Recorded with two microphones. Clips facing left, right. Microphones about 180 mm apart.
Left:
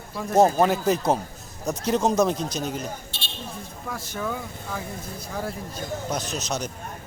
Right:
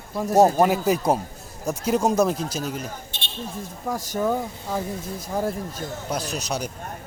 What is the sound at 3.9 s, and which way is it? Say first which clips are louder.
Speech: right 7 dB; 45° right (ahead or behind).